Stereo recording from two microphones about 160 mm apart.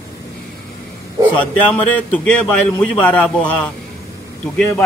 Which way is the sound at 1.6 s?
10° left (ahead or behind).